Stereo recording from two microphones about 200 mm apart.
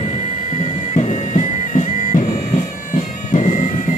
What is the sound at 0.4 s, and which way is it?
Bagpipes, 30° left (ahead or behind).